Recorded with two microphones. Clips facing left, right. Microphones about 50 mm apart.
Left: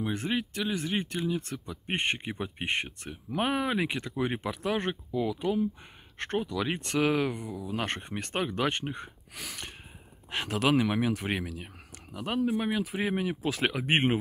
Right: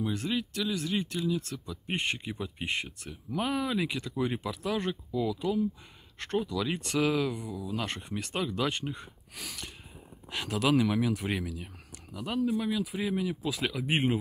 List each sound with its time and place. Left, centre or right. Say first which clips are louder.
0.0 s speech: left 1 dB; left
13.4 s speech: left 3 dB; left